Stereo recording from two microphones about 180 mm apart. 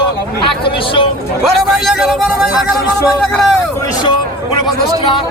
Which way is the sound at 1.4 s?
Centre (ahead or behind).